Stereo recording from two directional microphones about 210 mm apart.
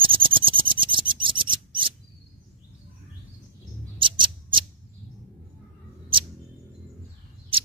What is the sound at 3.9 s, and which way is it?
Mouse, 25° right (ahead or behind).